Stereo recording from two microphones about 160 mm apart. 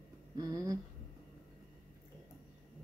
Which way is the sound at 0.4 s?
20° right (ahead or behind).